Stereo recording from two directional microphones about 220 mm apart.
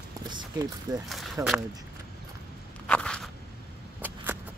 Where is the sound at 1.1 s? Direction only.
Centre (ahead or behind).